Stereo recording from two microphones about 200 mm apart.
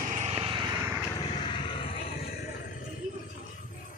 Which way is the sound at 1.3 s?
25° left (ahead or behind).